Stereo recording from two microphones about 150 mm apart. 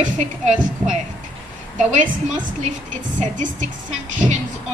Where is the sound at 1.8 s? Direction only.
55° right (ahead or behind).